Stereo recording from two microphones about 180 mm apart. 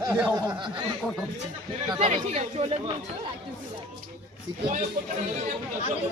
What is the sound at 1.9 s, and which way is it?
Speech, 35° right (ahead or behind).